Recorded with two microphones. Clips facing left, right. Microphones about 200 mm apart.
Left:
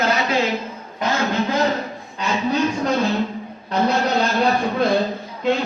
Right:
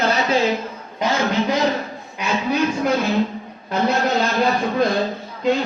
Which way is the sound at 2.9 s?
Centre (ahead or behind).